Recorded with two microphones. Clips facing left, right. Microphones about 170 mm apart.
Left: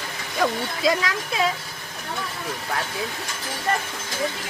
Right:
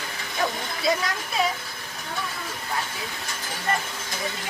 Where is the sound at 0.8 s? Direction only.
90° left.